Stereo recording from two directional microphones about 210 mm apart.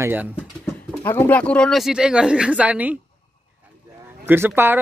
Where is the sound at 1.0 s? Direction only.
10° left (ahead or behind); by 3.0 s 5° right (ahead or behind).